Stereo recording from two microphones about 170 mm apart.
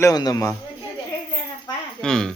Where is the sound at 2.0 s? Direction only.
5° left (ahead or behind).